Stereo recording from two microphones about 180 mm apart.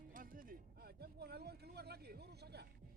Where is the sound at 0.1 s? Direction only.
50° right (ahead or behind).